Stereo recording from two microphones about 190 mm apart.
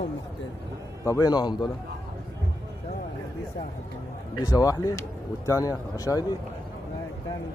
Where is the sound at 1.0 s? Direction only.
20° left (ahead or behind).